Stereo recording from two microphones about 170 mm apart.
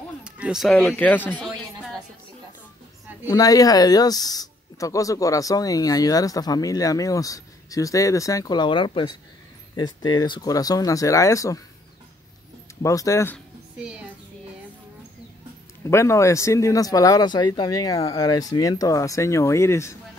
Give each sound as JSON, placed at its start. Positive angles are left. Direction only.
{"t": 0.2, "sound": "speech", "side_deg": -5}
{"t": 3.3, "sound": "speech", "side_deg": 20}
{"t": 12.8, "sound": "speech", "side_deg": 20}
{"t": 13.7, "sound": "a child's voice", "side_deg": -5}
{"t": 15.8, "sound": "speech", "side_deg": 15}